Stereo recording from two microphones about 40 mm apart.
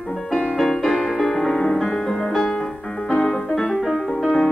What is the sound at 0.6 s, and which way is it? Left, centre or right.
Music, centre.